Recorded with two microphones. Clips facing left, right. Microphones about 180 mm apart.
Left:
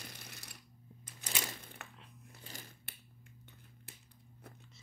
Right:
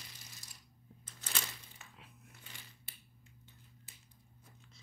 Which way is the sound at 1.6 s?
60° left (ahead or behind).